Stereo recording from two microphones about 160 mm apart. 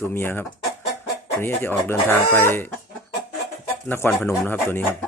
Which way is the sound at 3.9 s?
10° left (ahead or behind).